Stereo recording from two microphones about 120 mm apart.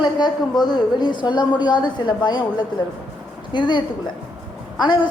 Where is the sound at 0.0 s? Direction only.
35° left (ahead or behind).